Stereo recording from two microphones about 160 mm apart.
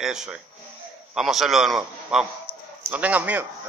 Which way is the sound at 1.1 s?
Centre (ahead or behind).